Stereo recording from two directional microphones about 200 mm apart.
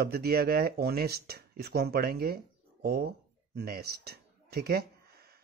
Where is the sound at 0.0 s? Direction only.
50° right (ahead or behind).